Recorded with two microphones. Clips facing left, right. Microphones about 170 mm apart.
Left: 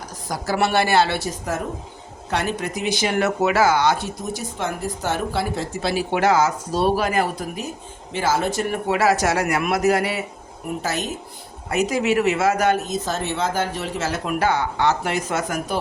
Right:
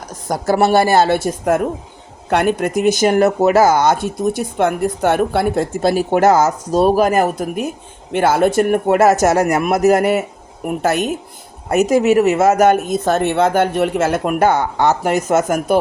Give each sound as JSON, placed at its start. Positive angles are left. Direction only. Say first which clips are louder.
{"t": 0.3, "sound": "speech", "louder": "right 7 dB", "side_deg": -45}
{"t": 10.7, "sound": "speech", "louder": "right 8 dB", "side_deg": -60}
{"t": 11.7, "sound": "speech", "louder": "right 7 dB", "side_deg": -45}
{"t": 12.9, "sound": "speech", "louder": "right 9 dB", "side_deg": -60}